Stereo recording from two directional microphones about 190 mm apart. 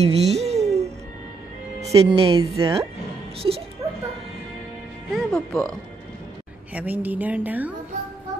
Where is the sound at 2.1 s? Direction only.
30° right (ahead or behind).